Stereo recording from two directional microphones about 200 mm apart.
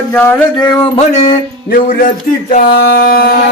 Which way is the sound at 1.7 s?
45° left (ahead or behind).